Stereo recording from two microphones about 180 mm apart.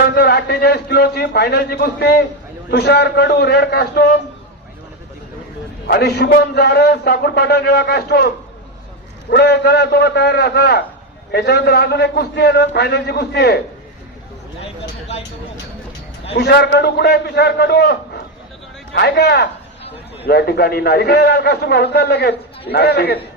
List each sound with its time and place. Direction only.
0.1 s a man's voice: 65° left (ahead or behind)
5.9 s a man's voice: 65° left (ahead or behind)
9.3 s a man's voice: 65° left (ahead or behind)
16.3 s a man's voice: 70° left (ahead or behind)